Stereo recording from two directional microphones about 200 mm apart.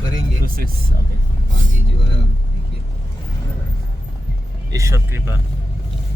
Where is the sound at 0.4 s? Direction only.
45° right (ahead or behind).